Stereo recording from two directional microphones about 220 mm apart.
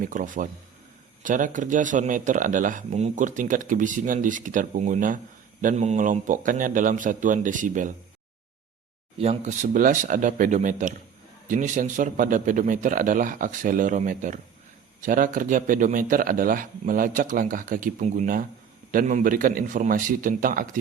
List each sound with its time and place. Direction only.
0.0 s speech: 35° right (ahead or behind)
9.1 s speech: 25° right (ahead or behind)